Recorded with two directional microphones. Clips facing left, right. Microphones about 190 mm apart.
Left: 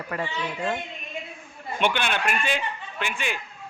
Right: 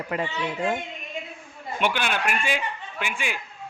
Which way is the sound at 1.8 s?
5° right (ahead or behind).